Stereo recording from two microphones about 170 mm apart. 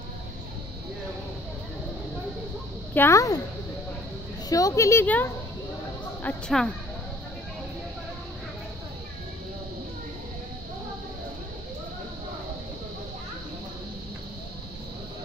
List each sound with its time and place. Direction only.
2.9 s a woman's voice: 15° left (ahead or behind)
4.5 s a woman's voice: 20° left (ahead or behind); by 6.7 s 5° left (ahead or behind)